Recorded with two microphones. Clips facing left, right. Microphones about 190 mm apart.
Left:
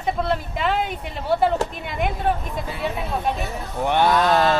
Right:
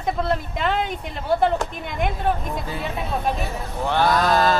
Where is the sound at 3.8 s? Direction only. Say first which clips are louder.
Left 2 dB; 20° left (ahead or behind).